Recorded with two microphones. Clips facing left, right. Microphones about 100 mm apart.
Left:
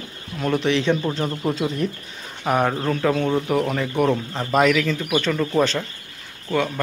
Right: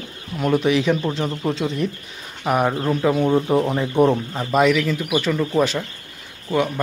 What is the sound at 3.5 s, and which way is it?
Speech, 20° right (ahead or behind).